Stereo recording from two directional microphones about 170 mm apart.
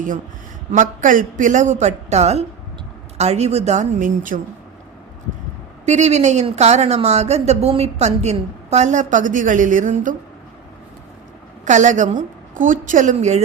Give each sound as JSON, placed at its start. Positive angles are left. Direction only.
{"t": 0.7, "sound": "a woman's voice", "side_deg": -50}
{"t": 5.8, "sound": "a woman's voice", "side_deg": -40}
{"t": 11.6, "sound": "a woman's voice", "side_deg": -45}